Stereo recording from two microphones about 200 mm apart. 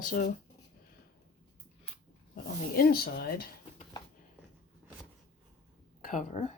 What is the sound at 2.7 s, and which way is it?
Speech, 50° left (ahead or behind).